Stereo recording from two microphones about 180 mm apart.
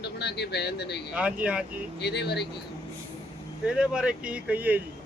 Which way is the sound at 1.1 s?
5° right (ahead or behind).